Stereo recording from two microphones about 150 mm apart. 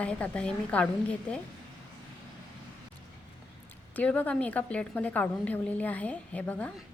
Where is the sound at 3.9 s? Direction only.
10° left (ahead or behind).